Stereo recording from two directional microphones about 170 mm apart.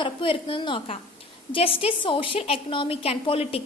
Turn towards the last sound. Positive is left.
turn(degrees=35)  # may be behind; listen again after turning